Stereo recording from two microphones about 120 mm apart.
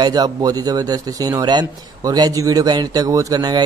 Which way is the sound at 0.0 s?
35° right (ahead or behind).